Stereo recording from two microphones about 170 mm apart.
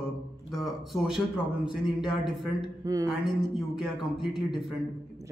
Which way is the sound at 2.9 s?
20° right (ahead or behind).